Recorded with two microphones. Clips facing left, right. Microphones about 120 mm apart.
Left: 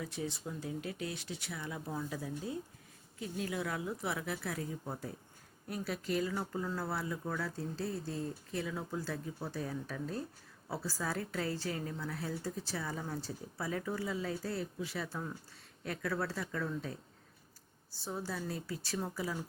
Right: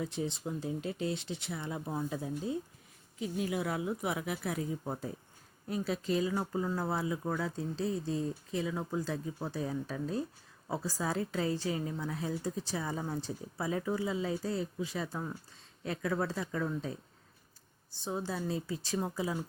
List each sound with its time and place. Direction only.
0.0 s a woman's voice: 25° right (ahead or behind)
17.9 s speech: 20° right (ahead or behind)